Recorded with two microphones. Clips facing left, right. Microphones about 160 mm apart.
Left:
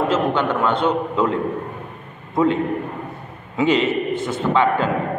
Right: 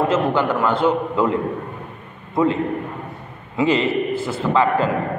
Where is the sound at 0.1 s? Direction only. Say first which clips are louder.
Right 1 dB; 5° right (ahead or behind).